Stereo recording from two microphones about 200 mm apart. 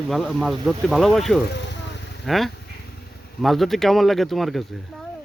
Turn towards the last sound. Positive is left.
turn(degrees=0)  # may be behind; listen again after turning